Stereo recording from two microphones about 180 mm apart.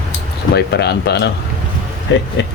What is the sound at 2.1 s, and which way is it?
Speech, 85° left.